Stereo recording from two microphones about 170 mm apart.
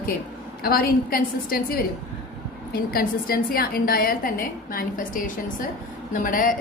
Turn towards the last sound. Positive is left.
turn(degrees=55)  # may be behind; listen again after turning